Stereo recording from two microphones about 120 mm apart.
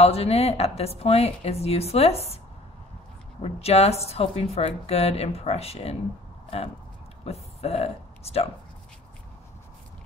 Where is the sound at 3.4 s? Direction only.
60° left (ahead or behind).